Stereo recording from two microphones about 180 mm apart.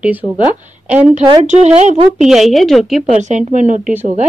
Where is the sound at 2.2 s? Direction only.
Centre (ahead or behind).